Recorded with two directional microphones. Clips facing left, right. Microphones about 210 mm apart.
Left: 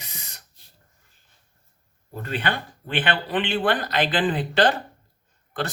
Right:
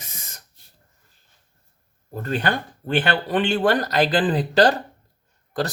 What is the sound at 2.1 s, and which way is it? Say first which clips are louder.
Speech: right 4 dB; 45° right (ahead or behind).